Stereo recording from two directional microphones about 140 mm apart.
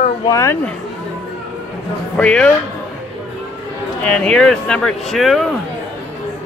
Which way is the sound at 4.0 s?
5° left (ahead or behind).